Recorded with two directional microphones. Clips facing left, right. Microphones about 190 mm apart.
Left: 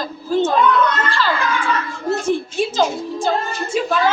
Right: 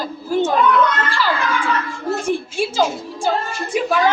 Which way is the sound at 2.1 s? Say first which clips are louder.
Left 2 dB; 10° right (ahead or behind).